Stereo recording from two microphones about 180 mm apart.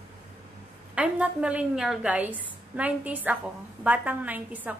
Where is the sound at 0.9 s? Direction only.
5° right (ahead or behind).